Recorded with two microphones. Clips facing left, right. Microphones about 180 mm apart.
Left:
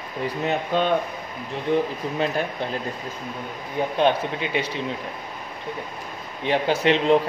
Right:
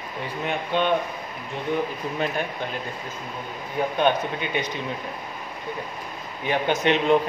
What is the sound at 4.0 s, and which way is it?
Speech, 30° left (ahead or behind).